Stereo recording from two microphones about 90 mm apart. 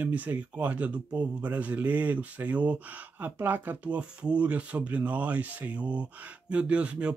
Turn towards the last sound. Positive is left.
turn(degrees=-15)  # may be behind; listen again after turning